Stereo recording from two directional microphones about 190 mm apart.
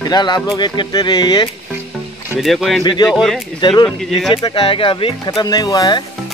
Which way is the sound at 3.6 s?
25° left (ahead or behind).